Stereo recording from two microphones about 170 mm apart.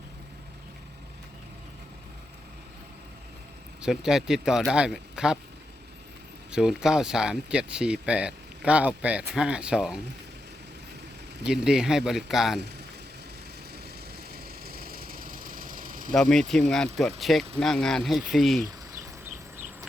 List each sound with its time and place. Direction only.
3.8 s speech: 5° right (ahead or behind)
6.5 s speech: 5° right (ahead or behind)
11.4 s speech: 5° right (ahead or behind)
13.8 s engine: 65° right (ahead or behind)
16.3 s speech: centre (ahead or behind)